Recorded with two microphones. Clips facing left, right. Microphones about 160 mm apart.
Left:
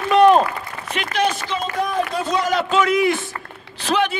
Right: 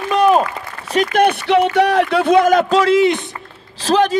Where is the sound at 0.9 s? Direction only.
50° right (ahead or behind).